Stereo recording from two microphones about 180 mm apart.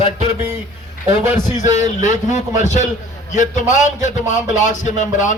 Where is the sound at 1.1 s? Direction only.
15° right (ahead or behind).